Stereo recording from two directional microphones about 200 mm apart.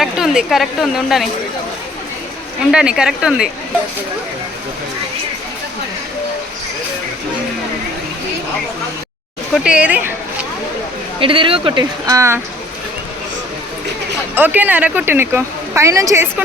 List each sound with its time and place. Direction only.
0.0 s a woman's voice: centre (ahead or behind)
2.7 s a woman's voice: 5° right (ahead or behind)
9.6 s a woman's voice: 5° right (ahead or behind)
11.2 s speech: 25° right (ahead or behind)
14.3 s a woman's voice: 10° right (ahead or behind)